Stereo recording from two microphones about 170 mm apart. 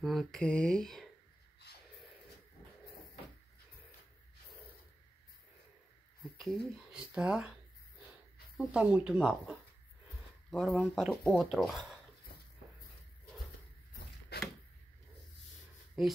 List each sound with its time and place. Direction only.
0.0 s speech: centre (ahead or behind)
6.3 s speech: centre (ahead or behind)
8.5 s speech: 5° right (ahead or behind)
14.3 s a sound: 70° left (ahead or behind)
16.0 s speech: centre (ahead or behind)